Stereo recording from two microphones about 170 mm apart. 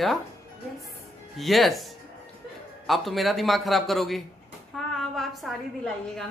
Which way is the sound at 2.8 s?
Centre (ahead or behind).